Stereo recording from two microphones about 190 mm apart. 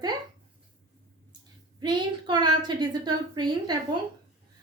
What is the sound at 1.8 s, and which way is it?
A woman's voice, 25° right (ahead or behind).